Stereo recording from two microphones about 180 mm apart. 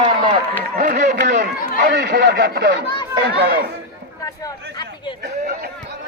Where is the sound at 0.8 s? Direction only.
60° right (ahead or behind).